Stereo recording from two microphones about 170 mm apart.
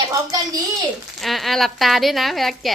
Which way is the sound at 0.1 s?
20° right (ahead or behind).